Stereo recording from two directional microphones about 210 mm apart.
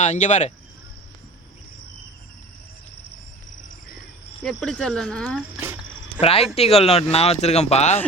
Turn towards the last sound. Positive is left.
turn(degrees=30)  # may be behind; listen again after turning